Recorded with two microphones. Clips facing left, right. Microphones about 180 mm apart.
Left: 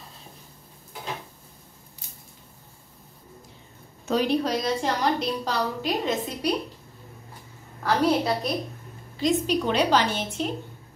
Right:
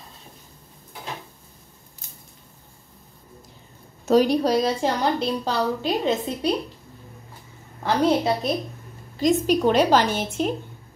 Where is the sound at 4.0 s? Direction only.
40° right (ahead or behind).